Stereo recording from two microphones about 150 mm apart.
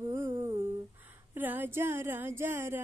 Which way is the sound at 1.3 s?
15° right (ahead or behind).